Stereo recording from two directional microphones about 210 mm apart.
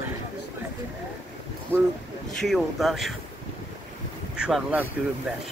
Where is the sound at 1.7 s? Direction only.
10° right (ahead or behind).